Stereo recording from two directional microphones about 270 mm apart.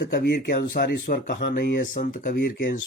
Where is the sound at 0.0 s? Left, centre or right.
Left.